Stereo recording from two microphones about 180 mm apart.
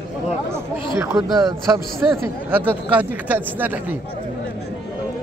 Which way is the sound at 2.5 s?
10° right (ahead or behind).